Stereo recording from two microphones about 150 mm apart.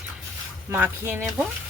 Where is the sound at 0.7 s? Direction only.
15° right (ahead or behind).